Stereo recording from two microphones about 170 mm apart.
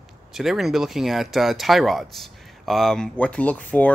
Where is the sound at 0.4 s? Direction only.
Centre (ahead or behind).